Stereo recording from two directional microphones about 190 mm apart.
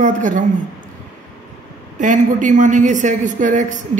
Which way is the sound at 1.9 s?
40° right (ahead or behind).